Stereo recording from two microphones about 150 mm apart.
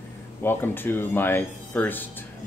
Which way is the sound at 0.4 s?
15° left (ahead or behind).